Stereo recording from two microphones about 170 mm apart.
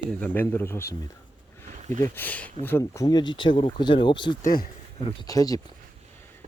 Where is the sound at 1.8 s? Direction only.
45° right (ahead or behind).